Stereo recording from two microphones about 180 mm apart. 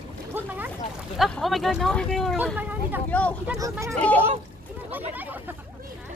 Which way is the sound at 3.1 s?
10° left (ahead or behind).